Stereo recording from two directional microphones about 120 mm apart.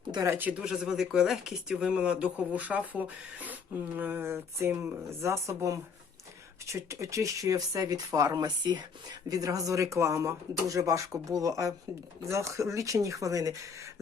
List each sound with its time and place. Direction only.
0.1 s speech: 30° right (ahead or behind)
0.3 s speech: 10° right (ahead or behind); by 13.6 s 25° right (ahead or behind)